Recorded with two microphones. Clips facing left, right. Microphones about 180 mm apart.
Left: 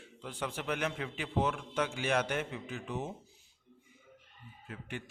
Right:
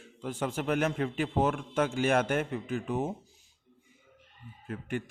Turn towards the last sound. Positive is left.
turn(degrees=-50)  # may be behind; listen again after turning